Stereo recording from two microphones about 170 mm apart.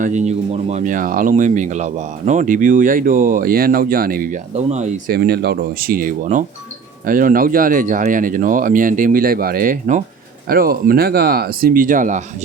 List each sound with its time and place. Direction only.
0.0 s speech: 45° right (ahead or behind)
4.5 s speech: 40° right (ahead or behind)
5.1 s speech: 70° right (ahead or behind); by 12.2 s 50° right (ahead or behind)